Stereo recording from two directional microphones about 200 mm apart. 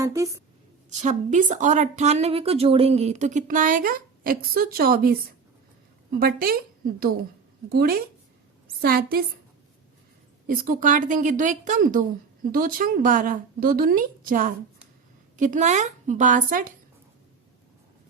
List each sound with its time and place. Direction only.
0.0 s a woman's voice: 15° right (ahead or behind)
0.9 s a woman's voice: 40° right (ahead or behind)
6.1 s a woman's voice: 50° right (ahead or behind)
10.4 s a woman's voice: 45° right (ahead or behind)